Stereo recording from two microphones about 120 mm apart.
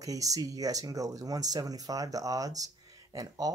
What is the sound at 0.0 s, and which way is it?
Speech, 30° right (ahead or behind).